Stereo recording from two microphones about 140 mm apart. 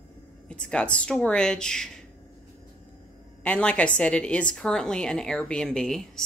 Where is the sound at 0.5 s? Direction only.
10° left (ahead or behind).